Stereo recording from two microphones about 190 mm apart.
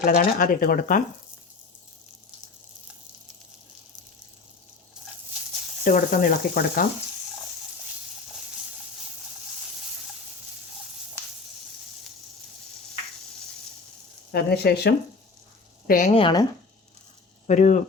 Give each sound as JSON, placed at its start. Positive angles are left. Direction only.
{"t": 0.0, "sound": "speech", "side_deg": 50}
{"t": 5.0, "sound": "a sound", "side_deg": -5}
{"t": 5.8, "sound": "speech", "side_deg": 45}
{"t": 14.3, "sound": "speech", "side_deg": 60}
{"t": 15.9, "sound": "speech", "side_deg": 40}
{"t": 16.1, "sound": "speech", "side_deg": 25}
{"t": 17.4, "sound": "speech", "side_deg": 40}